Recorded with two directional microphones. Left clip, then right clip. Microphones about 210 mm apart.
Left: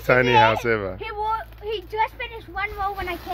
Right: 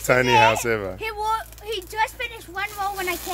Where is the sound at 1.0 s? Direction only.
5° left (ahead or behind).